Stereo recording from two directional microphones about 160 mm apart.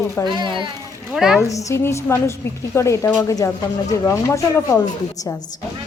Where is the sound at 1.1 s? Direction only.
Centre (ahead or behind).